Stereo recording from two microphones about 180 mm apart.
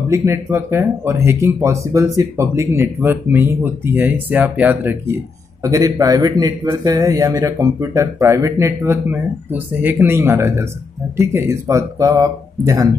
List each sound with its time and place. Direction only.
0.1 s a man's voice: 15° right (ahead or behind)